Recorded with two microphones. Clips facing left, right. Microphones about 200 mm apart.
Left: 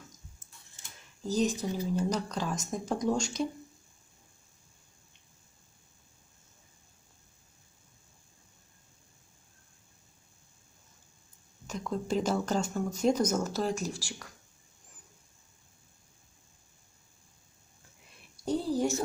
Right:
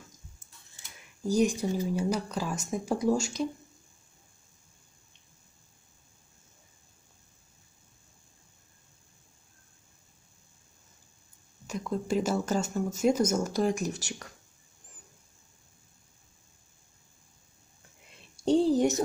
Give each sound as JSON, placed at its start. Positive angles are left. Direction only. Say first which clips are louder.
{"t": 1.2, "sound": "speech", "louder": "right 3 dB", "side_deg": -10}
{"t": 11.6, "sound": "speech", "louder": "right 2 dB", "side_deg": -5}
{"t": 18.6, "sound": "a sound", "louder": "right 5 dB", "side_deg": -20}